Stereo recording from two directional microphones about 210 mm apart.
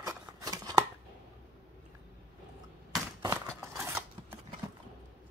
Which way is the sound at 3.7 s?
5° right (ahead or behind).